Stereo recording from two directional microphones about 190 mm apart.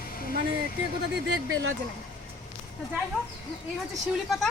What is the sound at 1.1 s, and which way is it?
Speech, 60° right (ahead or behind).